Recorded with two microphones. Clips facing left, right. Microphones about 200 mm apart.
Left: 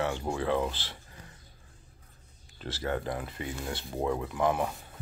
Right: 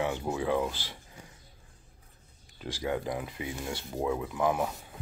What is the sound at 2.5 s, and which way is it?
Speech, 10° right (ahead or behind).